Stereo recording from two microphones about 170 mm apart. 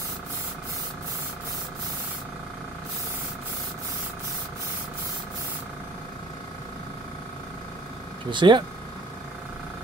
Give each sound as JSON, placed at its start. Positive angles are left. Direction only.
{"t": 8.3, "sound": "speech", "side_deg": -30}